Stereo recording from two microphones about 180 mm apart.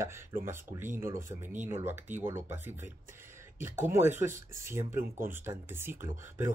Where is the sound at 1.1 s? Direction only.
45° right (ahead or behind).